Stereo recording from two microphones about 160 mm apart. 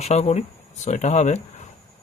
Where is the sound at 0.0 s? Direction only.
45° left (ahead or behind).